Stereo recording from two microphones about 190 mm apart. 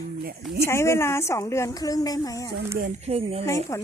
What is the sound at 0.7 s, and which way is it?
Speech, 15° left (ahead or behind).